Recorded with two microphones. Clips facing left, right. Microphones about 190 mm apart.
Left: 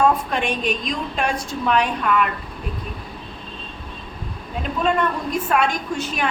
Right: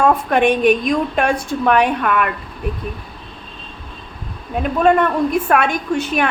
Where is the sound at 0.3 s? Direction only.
60° right (ahead or behind).